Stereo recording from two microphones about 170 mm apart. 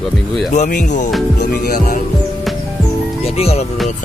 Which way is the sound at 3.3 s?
40° left (ahead or behind).